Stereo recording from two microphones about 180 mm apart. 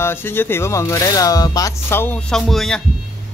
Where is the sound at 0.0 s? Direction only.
10° left (ahead or behind).